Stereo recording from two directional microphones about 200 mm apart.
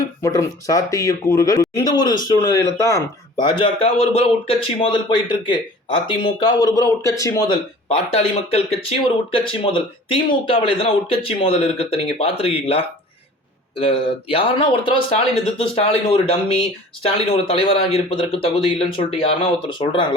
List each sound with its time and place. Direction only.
0.0 s speech: 15° left (ahead or behind)